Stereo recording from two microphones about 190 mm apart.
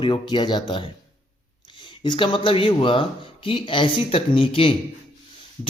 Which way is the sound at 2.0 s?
25° left (ahead or behind).